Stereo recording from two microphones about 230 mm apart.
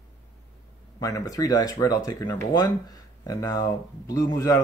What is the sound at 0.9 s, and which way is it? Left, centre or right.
Speech, centre.